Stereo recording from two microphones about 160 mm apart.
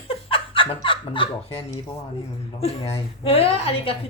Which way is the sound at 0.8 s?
30° left (ahead or behind).